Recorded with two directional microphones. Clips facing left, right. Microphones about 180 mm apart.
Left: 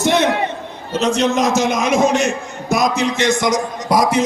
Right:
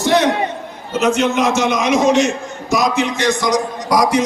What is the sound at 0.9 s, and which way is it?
A man's voice, 35° left (ahead or behind).